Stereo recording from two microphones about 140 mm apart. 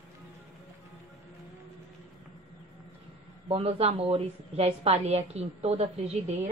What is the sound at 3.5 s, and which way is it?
A woman's voice, 45° right (ahead or behind).